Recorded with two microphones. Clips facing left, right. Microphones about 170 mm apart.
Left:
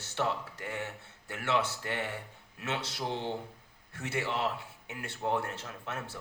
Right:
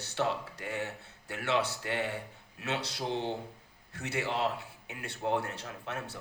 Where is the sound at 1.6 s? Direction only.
25° left (ahead or behind).